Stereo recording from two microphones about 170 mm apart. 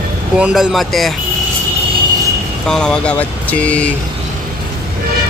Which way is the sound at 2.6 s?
5° left (ahead or behind).